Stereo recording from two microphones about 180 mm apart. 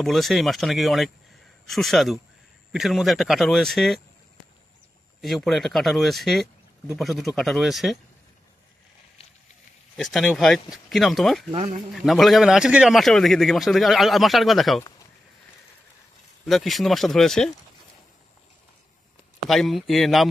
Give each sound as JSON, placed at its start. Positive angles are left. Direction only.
{"t": 0.0, "sound": "a man's voice", "side_deg": 0}
{"t": 5.2, "sound": "a man's voice", "side_deg": 0}
{"t": 9.9, "sound": "a man's voice", "side_deg": 0}
{"t": 11.5, "sound": "speech", "side_deg": -35}
{"t": 11.9, "sound": "a man's voice", "side_deg": 0}
{"t": 16.4, "sound": "a man's voice", "side_deg": 0}
{"t": 19.5, "sound": "a man's voice", "side_deg": 0}